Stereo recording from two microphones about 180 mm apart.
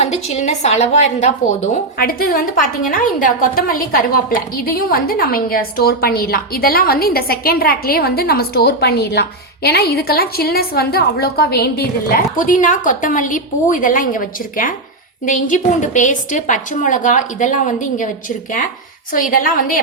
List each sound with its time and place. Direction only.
0.0 s speech: 40° left (ahead or behind)
2.0 s a woman's voice: 55° left (ahead or behind)
19.1 s a woman's voice: 50° left (ahead or behind)